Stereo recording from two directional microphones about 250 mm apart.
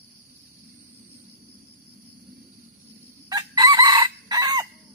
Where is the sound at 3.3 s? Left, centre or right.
Centre.